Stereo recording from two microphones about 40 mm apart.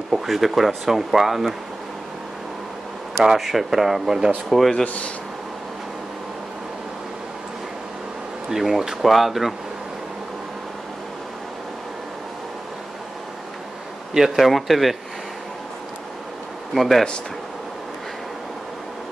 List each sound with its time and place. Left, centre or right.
0.1 s speech: centre
3.3 s speech: centre
4.8 s speech: left
8.5 s speech: centre
14.1 s speech: centre
16.7 s speech: centre